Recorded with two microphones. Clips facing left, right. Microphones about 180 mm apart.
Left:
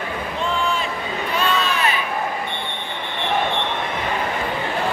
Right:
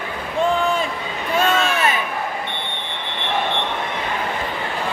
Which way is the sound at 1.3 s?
45° right (ahead or behind).